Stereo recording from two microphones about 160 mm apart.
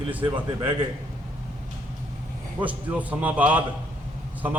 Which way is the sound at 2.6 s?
10° right (ahead or behind).